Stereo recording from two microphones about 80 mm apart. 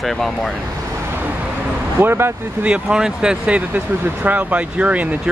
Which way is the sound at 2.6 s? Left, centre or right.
Centre.